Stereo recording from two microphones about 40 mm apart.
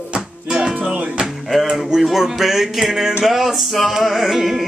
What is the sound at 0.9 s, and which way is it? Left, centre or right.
Music, right.